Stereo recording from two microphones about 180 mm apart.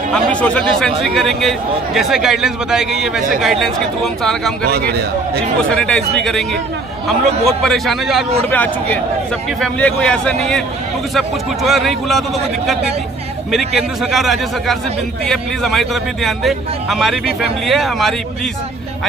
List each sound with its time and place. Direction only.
0.1 s speech: 5° left (ahead or behind)
4.6 s a man's voice: 65° right (ahead or behind)
5.7 s speech: 5° left (ahead or behind)
7.4 s speech: centre (ahead or behind)